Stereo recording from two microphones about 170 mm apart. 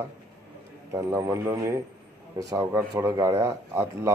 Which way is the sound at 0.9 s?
15° right (ahead or behind).